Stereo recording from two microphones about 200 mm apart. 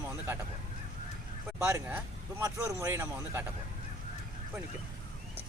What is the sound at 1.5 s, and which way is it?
Speech, 15° right (ahead or behind).